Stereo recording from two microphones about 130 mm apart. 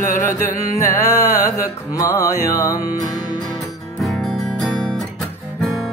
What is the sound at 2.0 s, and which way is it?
Music, 25° left (ahead or behind).